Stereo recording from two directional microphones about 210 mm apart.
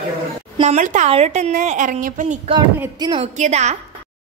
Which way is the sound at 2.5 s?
15° right (ahead or behind).